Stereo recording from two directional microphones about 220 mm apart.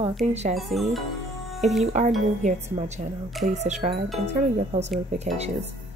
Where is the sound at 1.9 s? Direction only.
30° right (ahead or behind).